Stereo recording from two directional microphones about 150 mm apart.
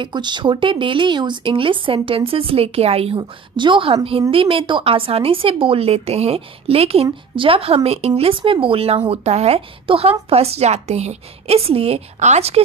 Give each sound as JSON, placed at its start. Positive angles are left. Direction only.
{"t": 0.0, "sound": "speech", "side_deg": -30}
{"t": 3.2, "sound": "a woman's voice", "side_deg": -30}